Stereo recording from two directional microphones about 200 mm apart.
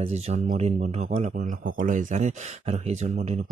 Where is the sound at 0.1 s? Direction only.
35° right (ahead or behind).